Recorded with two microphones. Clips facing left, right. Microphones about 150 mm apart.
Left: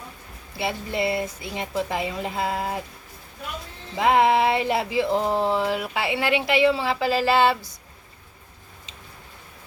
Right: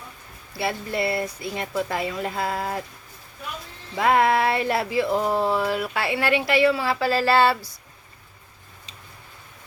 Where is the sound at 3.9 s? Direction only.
20° left (ahead or behind).